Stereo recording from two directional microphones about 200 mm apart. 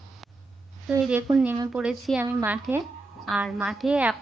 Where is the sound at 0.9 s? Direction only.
Centre (ahead or behind).